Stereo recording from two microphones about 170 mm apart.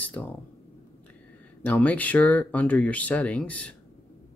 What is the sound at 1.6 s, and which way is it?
Speech, 10° left (ahead or behind).